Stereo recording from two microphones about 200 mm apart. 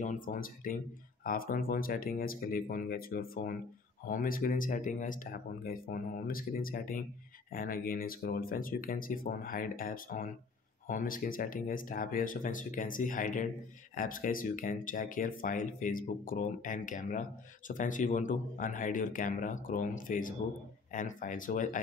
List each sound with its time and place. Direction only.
0.0 s speech: 40° left (ahead or behind)